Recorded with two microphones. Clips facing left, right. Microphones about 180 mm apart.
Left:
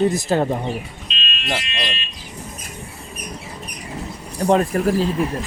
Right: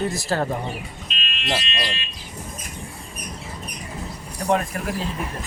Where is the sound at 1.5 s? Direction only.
20° left (ahead or behind).